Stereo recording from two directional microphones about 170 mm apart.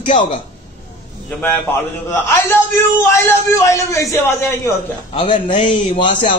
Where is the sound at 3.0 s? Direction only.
15° left (ahead or behind).